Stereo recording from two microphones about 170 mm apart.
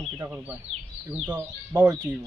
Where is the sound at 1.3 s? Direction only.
5° right (ahead or behind).